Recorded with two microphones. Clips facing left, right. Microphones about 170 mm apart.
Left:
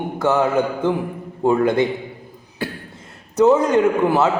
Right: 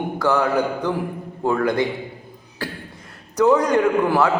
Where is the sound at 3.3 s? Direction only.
25° left (ahead or behind).